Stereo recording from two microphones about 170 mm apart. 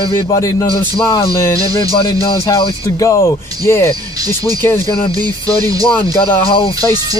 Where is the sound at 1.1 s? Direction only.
15° left (ahead or behind).